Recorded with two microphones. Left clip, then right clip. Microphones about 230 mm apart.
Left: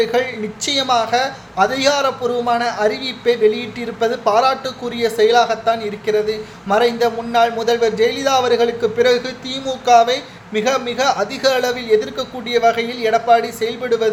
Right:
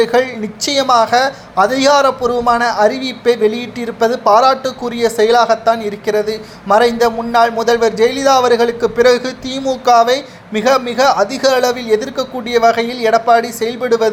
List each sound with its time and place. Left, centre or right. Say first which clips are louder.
0.0 s a man's voice: right 4 dB; right